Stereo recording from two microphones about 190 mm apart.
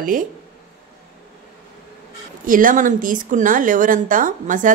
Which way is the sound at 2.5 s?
45° right (ahead or behind).